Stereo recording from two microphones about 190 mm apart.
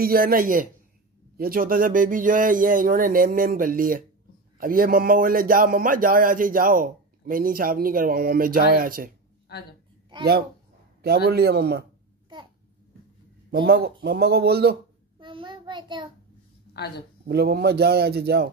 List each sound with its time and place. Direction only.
0.0 s speech: 50° right (ahead or behind)
9.5 s a woman's voice: 55° left (ahead or behind)
11.0 s a man's voice: 55° right (ahead or behind)
13.5 s a man's voice: 60° right (ahead or behind)
15.1 s child singing: 25° right (ahead or behind)
17.3 s a man's voice: 60° right (ahead or behind)